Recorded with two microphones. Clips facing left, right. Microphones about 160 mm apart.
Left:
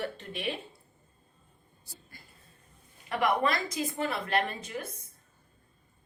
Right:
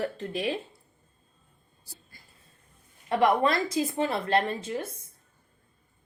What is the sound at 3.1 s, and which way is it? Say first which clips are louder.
A woman's voice: right 5 dB; 30° right (ahead or behind).